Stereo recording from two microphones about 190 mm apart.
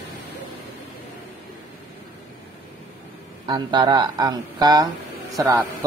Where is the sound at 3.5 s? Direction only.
25° right (ahead or behind).